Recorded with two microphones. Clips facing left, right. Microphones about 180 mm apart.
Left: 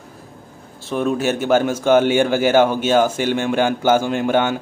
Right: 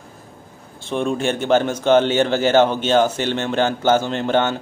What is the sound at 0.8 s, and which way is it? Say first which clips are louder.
A man's voice: left 1 dB; 5° left (ahead or behind).